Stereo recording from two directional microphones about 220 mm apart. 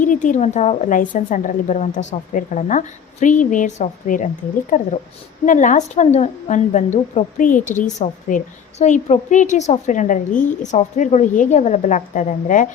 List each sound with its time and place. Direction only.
0.0 s a woman's voice: 35° left (ahead or behind)